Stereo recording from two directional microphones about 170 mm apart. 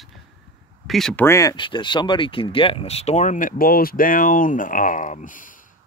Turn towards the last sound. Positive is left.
turn(degrees=50)  # may be behind; listen again after turning